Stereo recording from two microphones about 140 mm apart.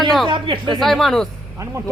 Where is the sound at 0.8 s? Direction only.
Centre (ahead or behind).